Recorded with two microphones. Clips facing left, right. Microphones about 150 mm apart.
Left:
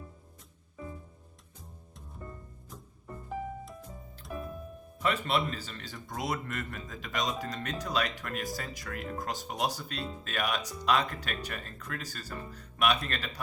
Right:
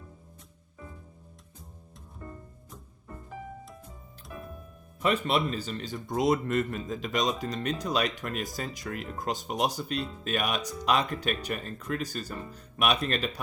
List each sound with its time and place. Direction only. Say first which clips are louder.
5.0 s speech: right 3 dB; 20° right (ahead or behind)